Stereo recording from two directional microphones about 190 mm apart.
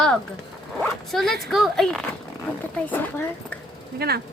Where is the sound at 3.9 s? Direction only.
55° right (ahead or behind).